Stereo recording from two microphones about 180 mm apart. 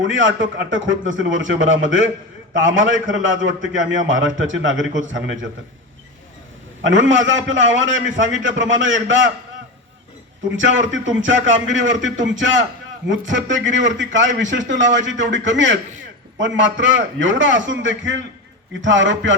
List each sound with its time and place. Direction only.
0.0 s a man's voice: 90° right
6.8 s a man's voice: 90° right
10.5 s a man's voice: 90° right